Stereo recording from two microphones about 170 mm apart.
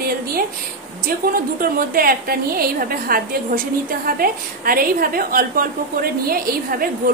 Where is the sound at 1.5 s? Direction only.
60° right (ahead or behind).